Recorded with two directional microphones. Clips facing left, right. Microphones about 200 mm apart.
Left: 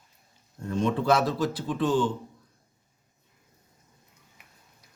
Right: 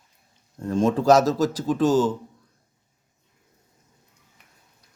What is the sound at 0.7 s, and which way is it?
Speech, 90° right.